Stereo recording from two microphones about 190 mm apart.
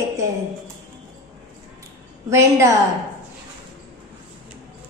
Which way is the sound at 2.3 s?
15° right (ahead or behind).